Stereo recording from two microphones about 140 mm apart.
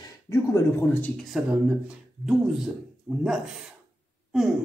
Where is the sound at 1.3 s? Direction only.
5° right (ahead or behind).